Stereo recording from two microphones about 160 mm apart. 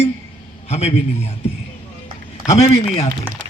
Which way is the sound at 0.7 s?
40° left (ahead or behind).